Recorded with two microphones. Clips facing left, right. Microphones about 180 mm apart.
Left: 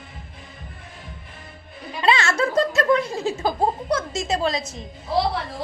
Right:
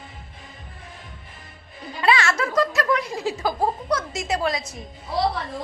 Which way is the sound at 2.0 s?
25° left (ahead or behind).